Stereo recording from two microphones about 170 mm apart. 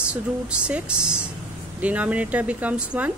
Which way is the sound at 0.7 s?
5° right (ahead or behind).